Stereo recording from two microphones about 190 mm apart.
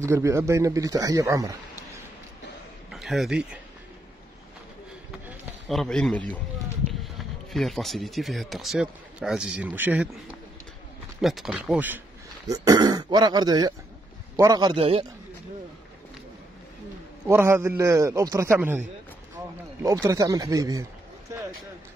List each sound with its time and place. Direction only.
0.0 s a man's voice: 15° right (ahead or behind)
2.9 s a sound: centre (ahead or behind)
5.7 s speech: centre (ahead or behind)
7.5 s speech: centre (ahead or behind)
11.1 s speech: centre (ahead or behind)
12.4 s a man's voice: 20° right (ahead or behind)
17.3 s a man's voice: 15° right (ahead or behind)